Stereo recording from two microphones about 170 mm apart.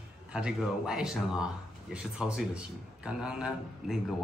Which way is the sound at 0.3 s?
5° right (ahead or behind).